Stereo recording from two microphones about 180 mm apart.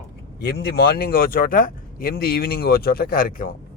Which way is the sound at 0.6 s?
60° left (ahead or behind).